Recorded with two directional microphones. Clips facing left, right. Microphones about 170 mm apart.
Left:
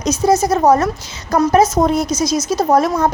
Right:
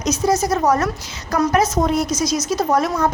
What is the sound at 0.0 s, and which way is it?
A woman's voice, 25° left (ahead or behind).